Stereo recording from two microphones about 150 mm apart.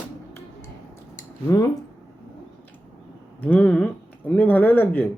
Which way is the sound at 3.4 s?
10° left (ahead or behind).